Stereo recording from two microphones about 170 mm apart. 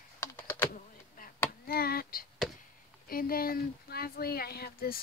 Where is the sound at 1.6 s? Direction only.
60° left (ahead or behind).